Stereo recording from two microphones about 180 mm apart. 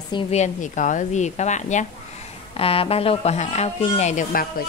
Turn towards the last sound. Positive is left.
turn(degrees=40)  # may be behind; listen again after turning